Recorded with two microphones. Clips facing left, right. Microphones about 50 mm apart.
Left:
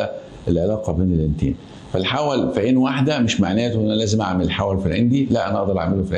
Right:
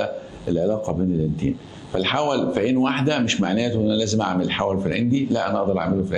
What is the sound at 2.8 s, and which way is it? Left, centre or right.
Speech, right.